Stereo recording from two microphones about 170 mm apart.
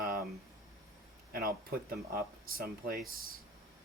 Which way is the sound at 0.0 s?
60° right (ahead or behind).